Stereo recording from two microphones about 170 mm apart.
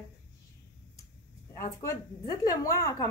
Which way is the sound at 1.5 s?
15° left (ahead or behind).